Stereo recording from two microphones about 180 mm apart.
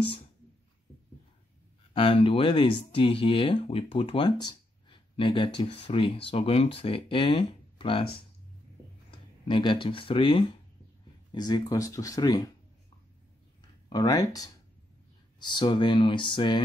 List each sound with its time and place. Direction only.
2.0 s speech: 30° left (ahead or behind)
9.5 s speech: 25° left (ahead or behind)
13.6 s a sound: 25° left (ahead or behind)
15.3 s speech: 25° left (ahead or behind)